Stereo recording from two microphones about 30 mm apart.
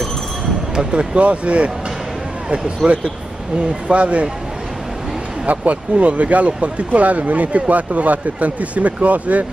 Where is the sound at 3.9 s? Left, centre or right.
Right.